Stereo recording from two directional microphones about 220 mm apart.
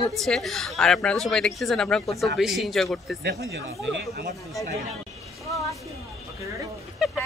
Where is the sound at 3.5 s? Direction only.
45° right (ahead or behind).